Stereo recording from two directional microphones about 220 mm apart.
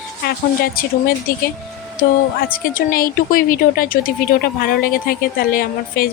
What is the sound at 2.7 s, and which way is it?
A woman's voice, 40° left (ahead or behind).